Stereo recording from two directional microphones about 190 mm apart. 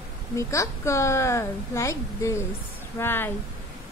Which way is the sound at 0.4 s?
15° left (ahead or behind).